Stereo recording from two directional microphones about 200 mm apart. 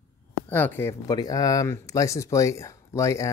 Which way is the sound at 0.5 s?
10° left (ahead or behind).